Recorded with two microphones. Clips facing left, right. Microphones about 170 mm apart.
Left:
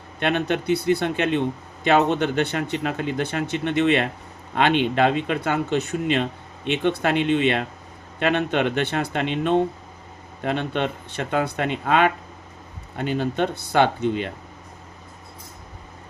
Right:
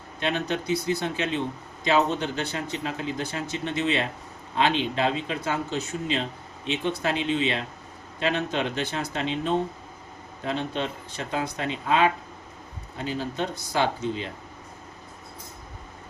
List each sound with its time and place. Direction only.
0.2 s a man's voice: 60° left (ahead or behind)